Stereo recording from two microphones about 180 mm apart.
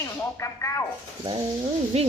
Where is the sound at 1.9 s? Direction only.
35° right (ahead or behind).